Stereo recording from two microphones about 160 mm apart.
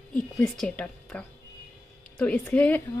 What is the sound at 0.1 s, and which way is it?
A woman's voice, 5° left (ahead or behind).